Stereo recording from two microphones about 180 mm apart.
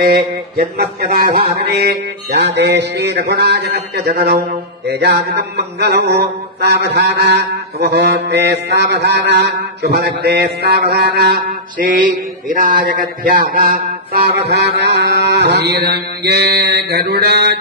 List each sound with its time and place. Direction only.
0.7 s mantra: 60° right (ahead or behind)
2.4 s a man's voice: 70° right (ahead or behind)
4.8 s mantra: 65° right (ahead or behind)
14.4 s mantra: 70° right (ahead or behind)